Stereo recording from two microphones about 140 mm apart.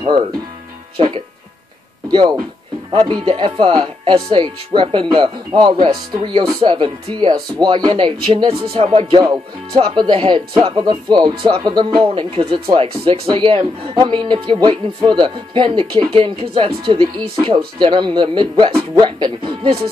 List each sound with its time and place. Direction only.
0.9 s speech: 35° right (ahead or behind)
8.7 s music: 45° right (ahead or behind)
9.2 s speech: 25° right (ahead or behind)